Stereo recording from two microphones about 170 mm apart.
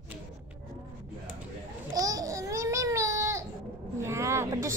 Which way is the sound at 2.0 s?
20° right (ahead or behind).